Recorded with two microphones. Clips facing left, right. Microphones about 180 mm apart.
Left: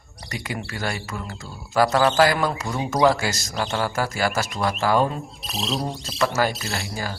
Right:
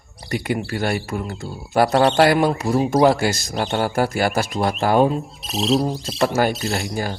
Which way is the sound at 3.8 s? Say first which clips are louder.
Right 5 dB; 55° right (ahead or behind).